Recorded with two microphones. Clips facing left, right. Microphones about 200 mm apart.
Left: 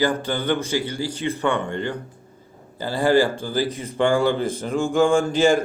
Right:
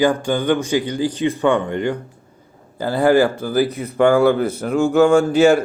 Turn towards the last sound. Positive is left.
turn(degrees=-10)  # may be behind; listen again after turning